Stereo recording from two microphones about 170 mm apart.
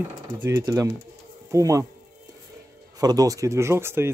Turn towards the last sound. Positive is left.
turn(degrees=-15)  # may be behind; listen again after turning